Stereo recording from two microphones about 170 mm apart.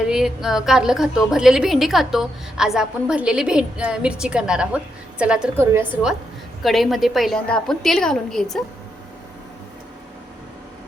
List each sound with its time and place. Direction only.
0.1 s a woman's voice: 5° right (ahead or behind)